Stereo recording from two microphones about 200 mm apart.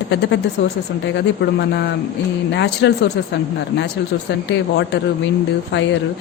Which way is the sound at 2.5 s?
60° left (ahead or behind).